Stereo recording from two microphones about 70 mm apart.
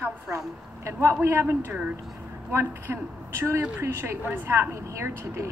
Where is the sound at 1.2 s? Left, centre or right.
Right.